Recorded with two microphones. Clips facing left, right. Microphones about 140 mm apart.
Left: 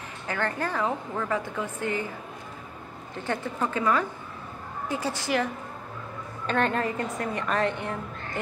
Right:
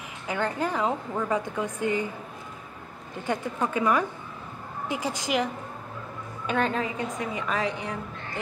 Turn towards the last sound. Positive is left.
turn(degrees=0)  # may be behind; listen again after turning